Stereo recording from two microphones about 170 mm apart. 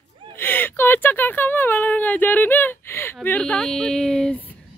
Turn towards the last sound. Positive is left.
turn(degrees=0)  # may be behind; listen again after turning